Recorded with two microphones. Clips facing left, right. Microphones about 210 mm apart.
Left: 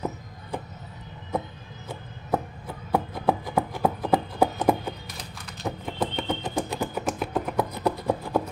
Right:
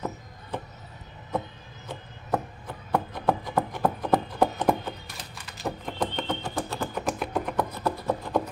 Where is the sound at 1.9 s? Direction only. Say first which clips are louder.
Left 2 dB; 10° left (ahead or behind).